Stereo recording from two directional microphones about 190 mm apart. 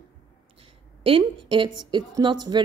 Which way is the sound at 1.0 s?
25° right (ahead or behind).